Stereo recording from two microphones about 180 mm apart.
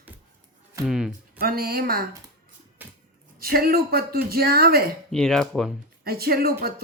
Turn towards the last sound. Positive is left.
turn(degrees=-60)  # may be behind; listen again after turning